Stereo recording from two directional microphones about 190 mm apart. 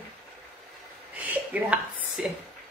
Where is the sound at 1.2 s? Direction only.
10° right (ahead or behind).